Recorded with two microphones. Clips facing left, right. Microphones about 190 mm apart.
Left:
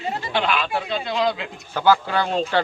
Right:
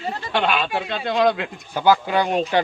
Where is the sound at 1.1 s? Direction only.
55° right (ahead or behind).